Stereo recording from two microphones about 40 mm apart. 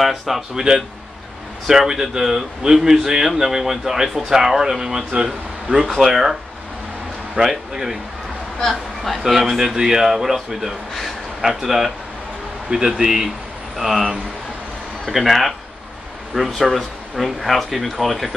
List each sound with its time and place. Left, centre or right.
0.0 s speech: centre
1.7 s speech: centre
5.9 s speech: centre
7.3 s speech: centre
9.0 s speech: centre
15.0 s speech: centre